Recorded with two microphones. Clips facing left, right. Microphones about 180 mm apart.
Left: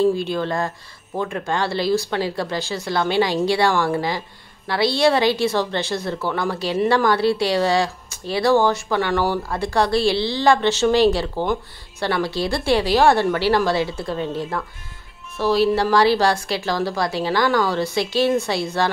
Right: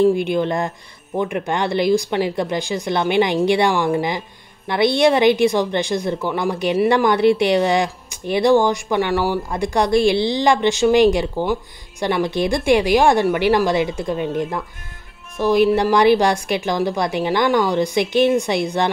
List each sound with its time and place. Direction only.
0.0 s a woman's voice: 15° right (ahead or behind)
15.3 s a woman's voice: 15° right (ahead or behind)